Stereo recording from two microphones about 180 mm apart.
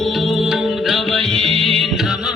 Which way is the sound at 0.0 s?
Centre (ahead or behind).